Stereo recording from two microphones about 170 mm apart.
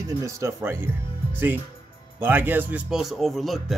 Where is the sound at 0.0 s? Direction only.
20° right (ahead or behind).